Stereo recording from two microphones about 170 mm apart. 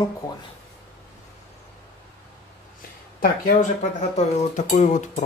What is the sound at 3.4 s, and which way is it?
Speech, 45° left (ahead or behind).